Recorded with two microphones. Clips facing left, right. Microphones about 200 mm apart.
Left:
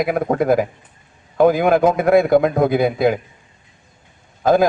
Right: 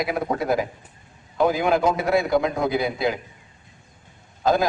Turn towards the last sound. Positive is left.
turn(degrees=50)  # may be behind; listen again after turning